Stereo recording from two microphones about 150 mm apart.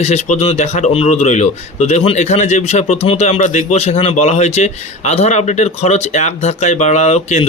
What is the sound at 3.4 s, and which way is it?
A man's voice, 55° left (ahead or behind).